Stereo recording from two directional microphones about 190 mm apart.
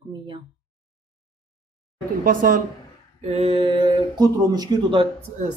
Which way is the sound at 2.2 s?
45° right (ahead or behind).